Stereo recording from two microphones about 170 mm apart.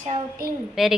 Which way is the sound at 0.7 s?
Centre (ahead or behind).